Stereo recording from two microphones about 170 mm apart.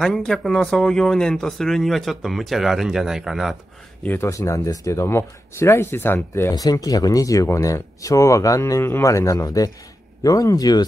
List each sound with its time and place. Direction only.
0.0 s speech: centre (ahead or behind)
4.0 s speech: 15° left (ahead or behind)